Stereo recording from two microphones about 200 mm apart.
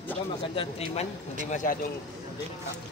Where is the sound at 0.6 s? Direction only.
30° left (ahead or behind).